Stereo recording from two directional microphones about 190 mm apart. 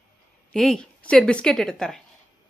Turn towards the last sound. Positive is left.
turn(degrees=5)  # may be behind; listen again after turning